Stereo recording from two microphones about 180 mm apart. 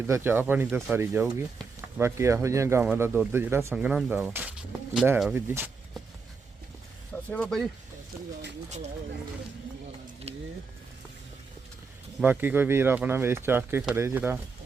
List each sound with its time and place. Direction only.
0.1 s speech: 10° right (ahead or behind)
7.3 s speech: 5° left (ahead or behind)
10.3 s vehicle: 35° right (ahead or behind)
12.2 s speech: 10° right (ahead or behind)